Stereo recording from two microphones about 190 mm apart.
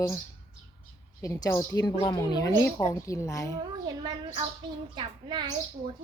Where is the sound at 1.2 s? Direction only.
15° left (ahead or behind).